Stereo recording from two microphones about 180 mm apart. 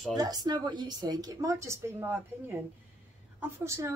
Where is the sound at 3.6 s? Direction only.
15° right (ahead or behind).